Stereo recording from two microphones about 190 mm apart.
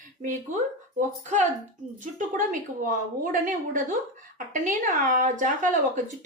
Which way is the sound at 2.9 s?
45° right (ahead or behind).